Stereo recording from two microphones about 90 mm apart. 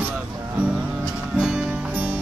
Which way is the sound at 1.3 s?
10° right (ahead or behind).